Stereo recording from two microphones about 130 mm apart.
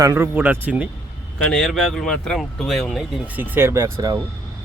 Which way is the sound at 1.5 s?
5° left (ahead or behind).